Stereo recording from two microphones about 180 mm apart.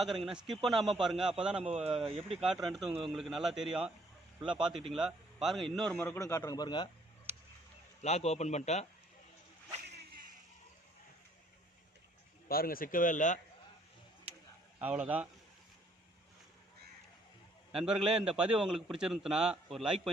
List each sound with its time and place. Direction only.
0.3 s a man's voice: centre (ahead or behind)
1.7 s speech: 35° right (ahead or behind)
2.6 s a man's voice: centre (ahead or behind)
6.0 s a man's voice: 15° left (ahead or behind)
8.0 s a man's voice: 35° left (ahead or behind)
12.5 s a man's voice: 55° left (ahead or behind)
14.8 s speech: 10° right (ahead or behind)
17.7 s a man's voice: 5° right (ahead or behind)